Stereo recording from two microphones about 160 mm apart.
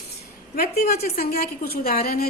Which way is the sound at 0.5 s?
75° left (ahead or behind).